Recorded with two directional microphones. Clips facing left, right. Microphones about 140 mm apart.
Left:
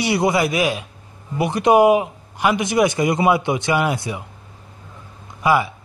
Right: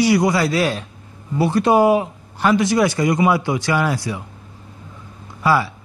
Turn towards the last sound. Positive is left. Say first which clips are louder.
# even
turn(degrees=15)  # may be behind; listen again after turning